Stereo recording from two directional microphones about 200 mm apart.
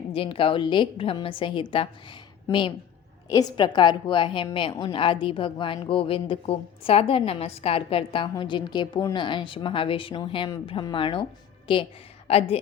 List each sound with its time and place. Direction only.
0.1 s a woman's voice: 25° left (ahead or behind)
12.3 s a woman's voice: 30° left (ahead or behind)